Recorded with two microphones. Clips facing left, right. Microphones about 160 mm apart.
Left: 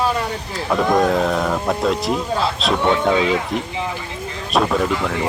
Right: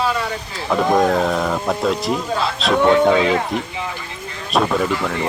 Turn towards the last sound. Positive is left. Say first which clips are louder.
# even
turn(degrees=0)  # may be behind; listen again after turning